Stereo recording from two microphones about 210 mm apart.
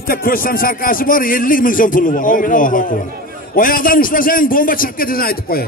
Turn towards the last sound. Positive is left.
turn(degrees=45)  # may be behind; listen again after turning